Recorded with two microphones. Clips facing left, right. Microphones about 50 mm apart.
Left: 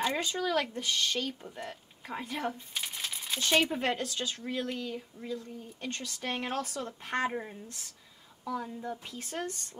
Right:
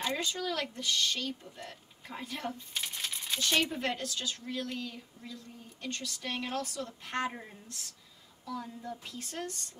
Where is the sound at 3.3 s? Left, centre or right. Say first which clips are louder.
Left 3 dB; centre.